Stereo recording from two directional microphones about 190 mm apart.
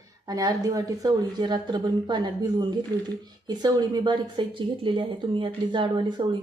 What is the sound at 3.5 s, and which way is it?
Speech, 20° right (ahead or behind).